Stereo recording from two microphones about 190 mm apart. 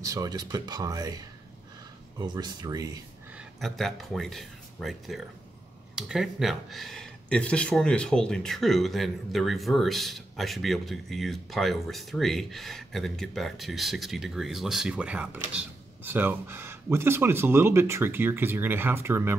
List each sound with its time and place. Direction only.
0.0 s speech: 20° right (ahead or behind)
3.3 s speech: centre (ahead or behind)